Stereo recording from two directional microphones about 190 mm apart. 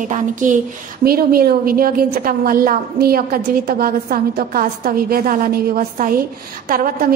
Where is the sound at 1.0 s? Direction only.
55° right (ahead or behind).